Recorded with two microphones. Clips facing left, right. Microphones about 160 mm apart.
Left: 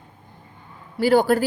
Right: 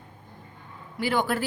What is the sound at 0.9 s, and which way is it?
Speech, 35° left (ahead or behind).